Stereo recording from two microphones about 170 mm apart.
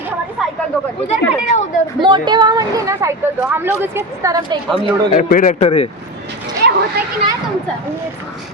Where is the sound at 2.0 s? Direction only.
25° right (ahead or behind).